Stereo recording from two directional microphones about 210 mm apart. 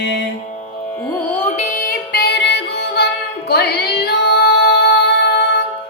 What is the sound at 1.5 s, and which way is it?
Music, 35° left (ahead or behind).